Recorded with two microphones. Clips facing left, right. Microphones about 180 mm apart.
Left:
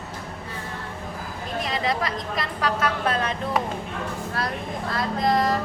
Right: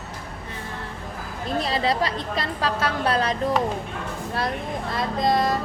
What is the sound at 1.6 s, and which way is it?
A woman's voice, 30° right (ahead or behind).